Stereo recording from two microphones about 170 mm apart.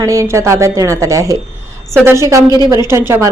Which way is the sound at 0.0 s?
20° right (ahead or behind).